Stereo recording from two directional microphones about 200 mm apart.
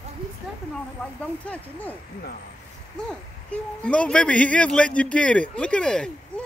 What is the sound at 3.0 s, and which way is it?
Speech, 5° left (ahead or behind).